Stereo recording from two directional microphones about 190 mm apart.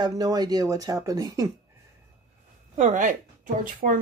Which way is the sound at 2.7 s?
40° right (ahead or behind).